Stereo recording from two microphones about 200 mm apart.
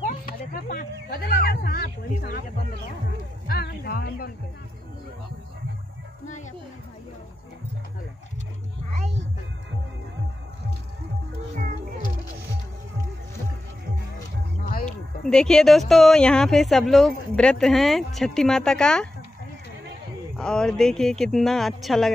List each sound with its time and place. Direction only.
0.0 s speech: 45° left (ahead or behind)
3.4 s speech: 50° left (ahead or behind)
11.5 s music: 45° right (ahead or behind)
14.6 s music: 45° left (ahead or behind)
14.9 s a sound: 5° left (ahead or behind)
15.9 s a woman's voice: centre (ahead or behind)
20.3 s a woman's voice: 5° left (ahead or behind)